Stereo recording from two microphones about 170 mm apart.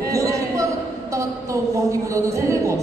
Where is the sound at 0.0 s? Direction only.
20° right (ahead or behind).